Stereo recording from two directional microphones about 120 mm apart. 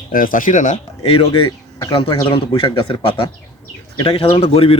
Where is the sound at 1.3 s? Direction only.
40° left (ahead or behind).